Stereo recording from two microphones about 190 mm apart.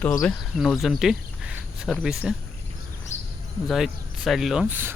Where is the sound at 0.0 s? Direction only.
10° left (ahead or behind).